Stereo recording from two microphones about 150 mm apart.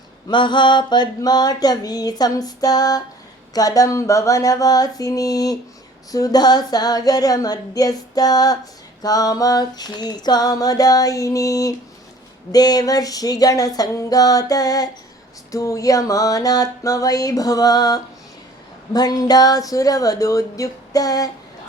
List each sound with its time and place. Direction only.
0.3 s female singing: 30° left (ahead or behind)